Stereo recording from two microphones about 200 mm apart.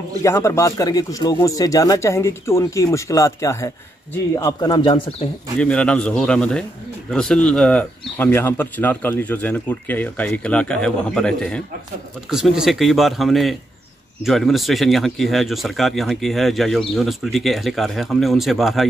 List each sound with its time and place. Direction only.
0.2 s speech: 15° left (ahead or behind)
5.6 s speech: 5° left (ahead or behind)